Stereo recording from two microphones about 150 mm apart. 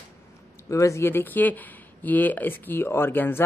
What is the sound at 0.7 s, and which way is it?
A man's voice, 20° left (ahead or behind).